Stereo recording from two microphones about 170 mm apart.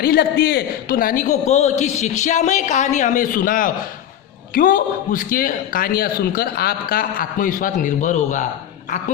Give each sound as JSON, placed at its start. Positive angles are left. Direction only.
{"t": 0.0, "sound": "a man's voice", "side_deg": 65}